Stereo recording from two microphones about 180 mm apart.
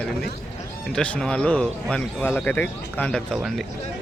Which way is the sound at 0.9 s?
5° left (ahead or behind).